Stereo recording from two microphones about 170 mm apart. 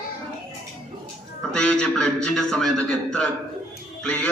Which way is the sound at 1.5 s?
5° left (ahead or behind).